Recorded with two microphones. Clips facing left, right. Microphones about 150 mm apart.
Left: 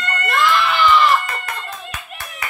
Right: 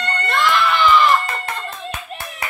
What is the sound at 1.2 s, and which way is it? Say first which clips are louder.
Clapping: right 2 dB; 30° right (ahead or behind).